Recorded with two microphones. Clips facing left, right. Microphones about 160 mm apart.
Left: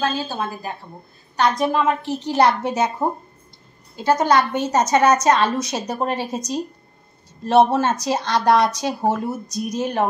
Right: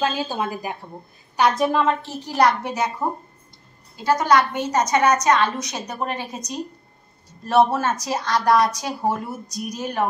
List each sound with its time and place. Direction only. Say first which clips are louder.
0.0 s a woman's voice: even; 15° right (ahead or behind); by 2.0 s centre (ahead or behind)
2.0 s a woman's voice: left 2 dB; 20° left (ahead or behind)